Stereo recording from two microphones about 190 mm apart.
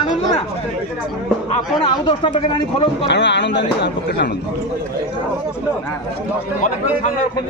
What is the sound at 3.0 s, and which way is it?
Speech, 65° left (ahead or behind).